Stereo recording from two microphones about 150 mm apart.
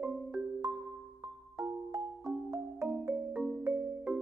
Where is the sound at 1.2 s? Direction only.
25° right (ahead or behind).